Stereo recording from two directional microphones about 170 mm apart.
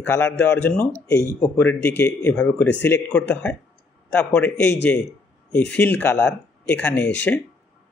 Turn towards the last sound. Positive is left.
turn(degrees=10)  # may be behind; listen again after turning